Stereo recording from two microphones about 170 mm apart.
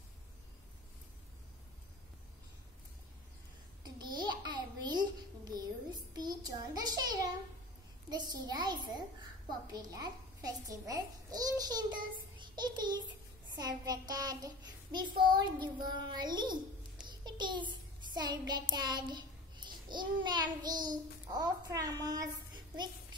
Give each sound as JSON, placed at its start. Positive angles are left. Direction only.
{"t": 3.8, "sound": "a sound", "side_deg": -25}
{"t": 9.7, "sound": "a child's voice", "side_deg": -25}
{"t": 13.5, "sound": "child singing", "side_deg": -25}
{"t": 17.1, "sound": "a child's voice", "side_deg": -25}
{"t": 18.1, "sound": "child singing", "side_deg": -25}